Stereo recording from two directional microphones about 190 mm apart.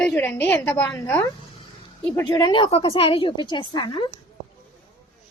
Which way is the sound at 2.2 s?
20° left (ahead or behind).